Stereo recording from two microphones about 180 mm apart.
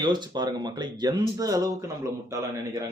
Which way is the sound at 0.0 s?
25° right (ahead or behind).